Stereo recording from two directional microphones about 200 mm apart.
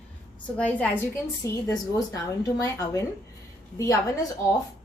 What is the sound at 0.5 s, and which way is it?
Speech, 5° left (ahead or behind).